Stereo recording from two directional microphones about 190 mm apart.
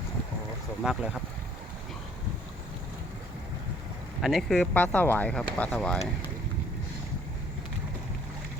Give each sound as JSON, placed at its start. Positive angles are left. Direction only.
{"t": 0.8, "sound": "speech", "side_deg": -5}
{"t": 4.2, "sound": "speech", "side_deg": 0}